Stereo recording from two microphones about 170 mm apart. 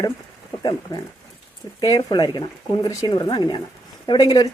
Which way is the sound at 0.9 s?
20° left (ahead or behind).